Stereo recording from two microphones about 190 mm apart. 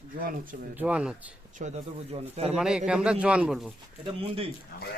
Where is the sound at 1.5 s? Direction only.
35° right (ahead or behind).